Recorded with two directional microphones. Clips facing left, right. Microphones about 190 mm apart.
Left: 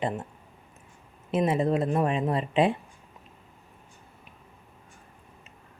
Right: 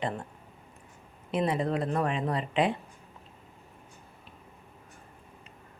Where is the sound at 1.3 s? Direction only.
25° left (ahead or behind).